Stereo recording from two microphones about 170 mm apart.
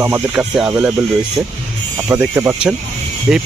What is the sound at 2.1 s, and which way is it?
Speech, 15° right (ahead or behind).